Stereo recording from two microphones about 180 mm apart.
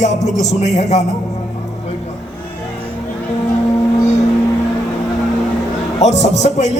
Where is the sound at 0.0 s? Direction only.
40° left (ahead or behind).